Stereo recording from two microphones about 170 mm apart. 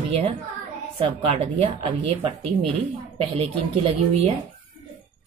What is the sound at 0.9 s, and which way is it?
Speech, 35° right (ahead or behind).